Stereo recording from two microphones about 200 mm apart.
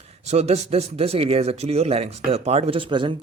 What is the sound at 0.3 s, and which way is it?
Speech, 35° right (ahead or behind).